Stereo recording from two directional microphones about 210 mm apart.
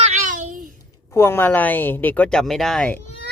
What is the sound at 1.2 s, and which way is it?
Speech, 10° left (ahead or behind).